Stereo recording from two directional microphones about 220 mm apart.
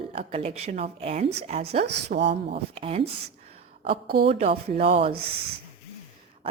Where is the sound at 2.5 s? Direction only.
25° right (ahead or behind).